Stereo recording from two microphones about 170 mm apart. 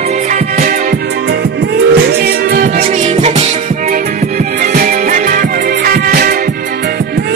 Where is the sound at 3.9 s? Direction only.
55° right (ahead or behind).